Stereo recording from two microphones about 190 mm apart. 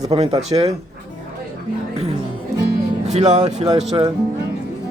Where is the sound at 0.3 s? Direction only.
30° right (ahead or behind).